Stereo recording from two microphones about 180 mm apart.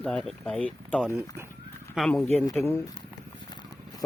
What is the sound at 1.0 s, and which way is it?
Speech, 5° right (ahead or behind).